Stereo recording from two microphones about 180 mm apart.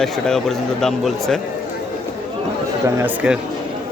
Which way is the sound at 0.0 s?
Centre (ahead or behind).